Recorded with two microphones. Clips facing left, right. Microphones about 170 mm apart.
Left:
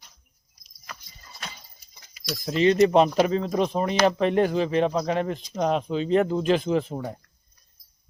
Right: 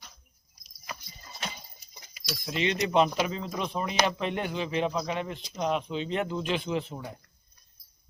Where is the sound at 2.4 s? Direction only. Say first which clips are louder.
Left 10 dB; 40° left (ahead or behind).